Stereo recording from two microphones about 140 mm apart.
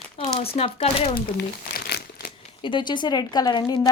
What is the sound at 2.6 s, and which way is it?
Speech, 35° left (ahead or behind).